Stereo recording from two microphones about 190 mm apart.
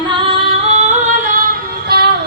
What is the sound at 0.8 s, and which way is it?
Yodeling, 35° right (ahead or behind).